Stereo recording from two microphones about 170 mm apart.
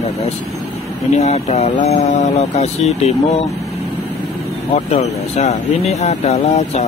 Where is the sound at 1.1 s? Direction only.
40° left (ahead or behind).